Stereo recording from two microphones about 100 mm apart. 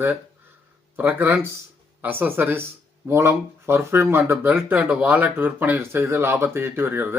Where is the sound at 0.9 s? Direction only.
20° right (ahead or behind).